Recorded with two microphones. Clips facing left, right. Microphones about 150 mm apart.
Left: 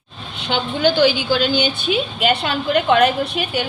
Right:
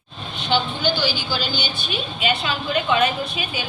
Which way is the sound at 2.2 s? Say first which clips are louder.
Left 2 dB; 60° left (ahead or behind).